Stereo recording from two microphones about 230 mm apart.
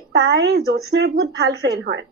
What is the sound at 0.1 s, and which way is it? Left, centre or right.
Speech, right.